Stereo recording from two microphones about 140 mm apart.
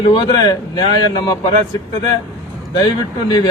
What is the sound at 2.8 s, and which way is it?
Speech, 30° left (ahead or behind).